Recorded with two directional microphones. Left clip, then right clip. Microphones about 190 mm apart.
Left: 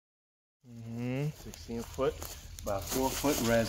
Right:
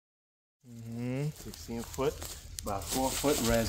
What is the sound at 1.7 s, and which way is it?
Speech, 70° right (ahead or behind).